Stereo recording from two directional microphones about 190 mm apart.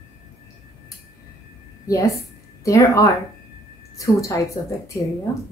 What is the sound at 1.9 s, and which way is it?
A woman's voice, 15° left (ahead or behind).